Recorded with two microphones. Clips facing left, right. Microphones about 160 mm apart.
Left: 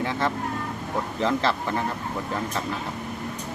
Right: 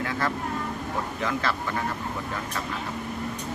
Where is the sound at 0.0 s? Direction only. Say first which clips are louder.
Left 2 dB; 25° left (ahead or behind).